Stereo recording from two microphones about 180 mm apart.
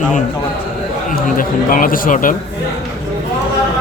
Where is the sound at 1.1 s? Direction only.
50° left (ahead or behind).